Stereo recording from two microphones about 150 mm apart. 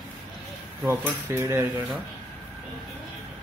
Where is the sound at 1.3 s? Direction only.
15° right (ahead or behind).